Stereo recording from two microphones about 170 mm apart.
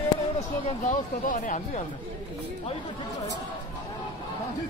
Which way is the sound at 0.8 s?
50° left (ahead or behind).